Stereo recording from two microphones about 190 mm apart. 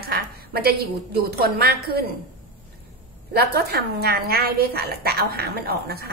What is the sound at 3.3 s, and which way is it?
A woman's voice, 55° right (ahead or behind).